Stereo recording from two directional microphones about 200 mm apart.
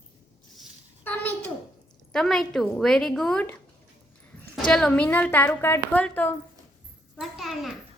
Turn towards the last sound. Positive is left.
turn(degrees=0)  # may be behind; listen again after turning